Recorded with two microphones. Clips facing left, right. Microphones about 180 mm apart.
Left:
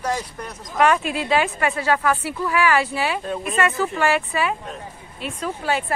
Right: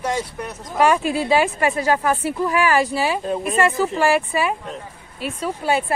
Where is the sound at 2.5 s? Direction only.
40° right (ahead or behind).